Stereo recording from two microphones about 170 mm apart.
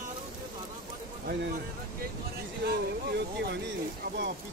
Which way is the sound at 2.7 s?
80° right.